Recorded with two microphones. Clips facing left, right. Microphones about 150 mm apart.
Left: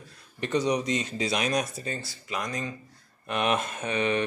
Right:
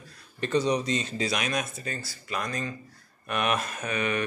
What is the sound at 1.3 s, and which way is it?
Speech, 35° left (ahead or behind).